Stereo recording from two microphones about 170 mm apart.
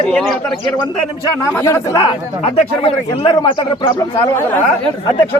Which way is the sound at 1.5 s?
15° left (ahead or behind).